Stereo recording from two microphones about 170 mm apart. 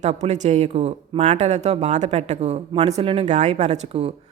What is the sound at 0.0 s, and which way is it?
Speech, 40° right (ahead or behind).